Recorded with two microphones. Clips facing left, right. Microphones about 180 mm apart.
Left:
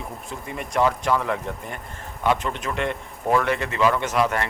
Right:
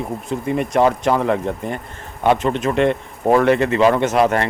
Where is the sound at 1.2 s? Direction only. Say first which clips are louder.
Right 8 dB; 30° right (ahead or behind).